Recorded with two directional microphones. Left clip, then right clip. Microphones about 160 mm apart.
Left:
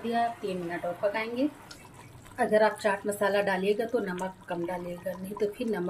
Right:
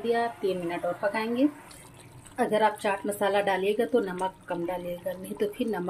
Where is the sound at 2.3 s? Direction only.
20° right (ahead or behind).